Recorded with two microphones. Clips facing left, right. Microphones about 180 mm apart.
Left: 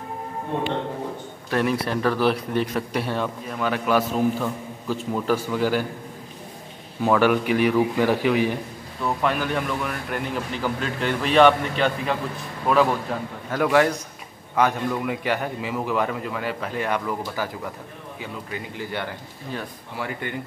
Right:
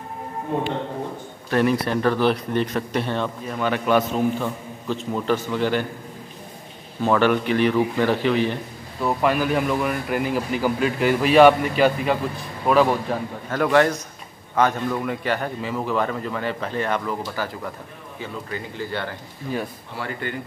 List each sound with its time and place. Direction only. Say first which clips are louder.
1.5 s speech: right 3 dB; centre (ahead or behind)
7.0 s a man's voice: even; 10° left (ahead or behind)
9.0 s a man's voice: right 3 dB; 5° right (ahead or behind); by 20.3 s 15° left (ahead or behind)